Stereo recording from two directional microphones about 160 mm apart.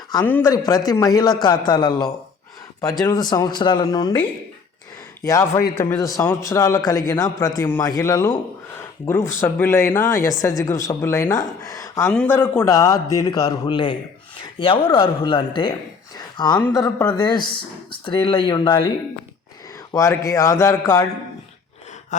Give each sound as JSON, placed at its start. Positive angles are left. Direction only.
{"t": 0.3, "sound": "speech", "side_deg": 10}
{"t": 0.5, "sound": "a man's voice", "side_deg": 25}
{"t": 3.2, "sound": "a man's voice", "side_deg": 25}
{"t": 5.2, "sound": "a man's voice", "side_deg": 20}
{"t": 16.1, "sound": "a sound", "side_deg": 25}
{"t": 16.7, "sound": "a man's voice", "side_deg": 20}
{"t": 19.9, "sound": "a man's voice", "side_deg": 20}